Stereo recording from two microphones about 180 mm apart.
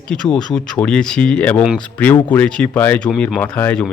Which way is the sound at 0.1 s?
5° left (ahead or behind).